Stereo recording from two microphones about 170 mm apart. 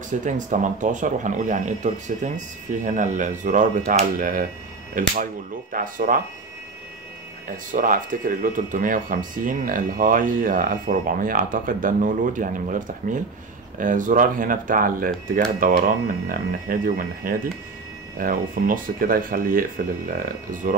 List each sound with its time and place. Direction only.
0.2 s speech: 50° right (ahead or behind)
7.7 s speech: 50° right (ahead or behind)